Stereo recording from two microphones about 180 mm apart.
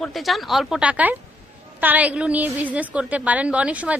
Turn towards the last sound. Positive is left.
turn(degrees=-10)  # may be behind; listen again after turning